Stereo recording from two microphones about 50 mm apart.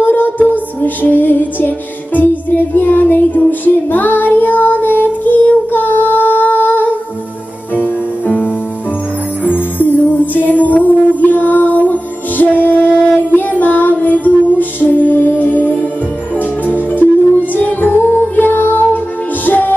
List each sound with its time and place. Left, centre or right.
0.0 s music: left